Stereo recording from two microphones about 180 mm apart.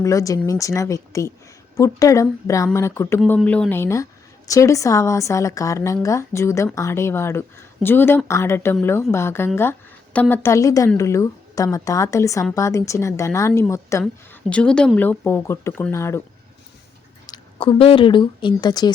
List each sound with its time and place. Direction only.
0.0 s a woman's voice: 15° left (ahead or behind)
14.5 s a woman's voice: 5° left (ahead or behind)
17.2 s speech: 25° left (ahead or behind)